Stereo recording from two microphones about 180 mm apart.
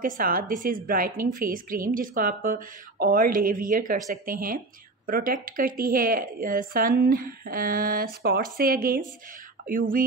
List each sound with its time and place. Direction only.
0.0 s a woman's voice: 55° right (ahead or behind)